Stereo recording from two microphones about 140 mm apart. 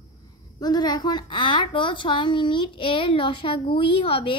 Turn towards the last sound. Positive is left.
turn(degrees=40)  # may be behind; listen again after turning